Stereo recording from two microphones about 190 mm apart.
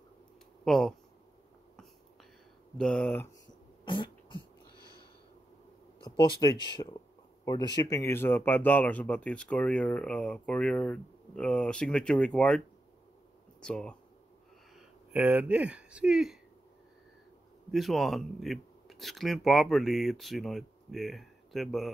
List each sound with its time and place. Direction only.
0.7 s speech: centre (ahead or behind)
2.8 s speech: 5° left (ahead or behind)
3.8 s cough: 25° left (ahead or behind)
6.0 s speech: 25° left (ahead or behind); by 13.9 s 5° left (ahead or behind)
15.1 s speech: 5° right (ahead or behind)
17.6 s speech: centre (ahead or behind)